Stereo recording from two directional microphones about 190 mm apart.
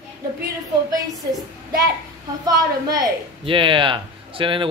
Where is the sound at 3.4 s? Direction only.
25° right (ahead or behind).